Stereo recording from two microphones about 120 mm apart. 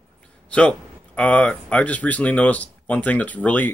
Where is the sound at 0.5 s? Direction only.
10° left (ahead or behind).